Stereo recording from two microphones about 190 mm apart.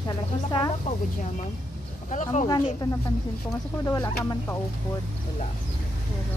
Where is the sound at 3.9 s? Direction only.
20° left (ahead or behind).